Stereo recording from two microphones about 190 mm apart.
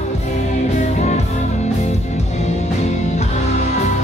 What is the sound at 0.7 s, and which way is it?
Music, 35° left (ahead or behind).